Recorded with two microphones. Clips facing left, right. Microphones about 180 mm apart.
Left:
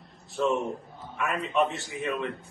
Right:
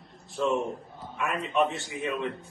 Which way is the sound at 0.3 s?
Centre (ahead or behind).